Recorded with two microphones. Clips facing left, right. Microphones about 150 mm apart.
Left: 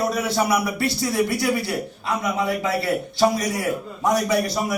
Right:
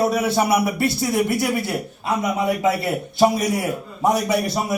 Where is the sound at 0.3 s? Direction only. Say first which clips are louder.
Right 3 dB; 25° right (ahead or behind).